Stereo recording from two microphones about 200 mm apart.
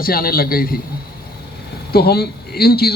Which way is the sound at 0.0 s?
50° left (ahead or behind).